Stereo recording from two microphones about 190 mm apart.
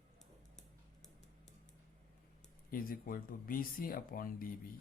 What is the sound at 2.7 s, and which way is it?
Speech, 50° left (ahead or behind).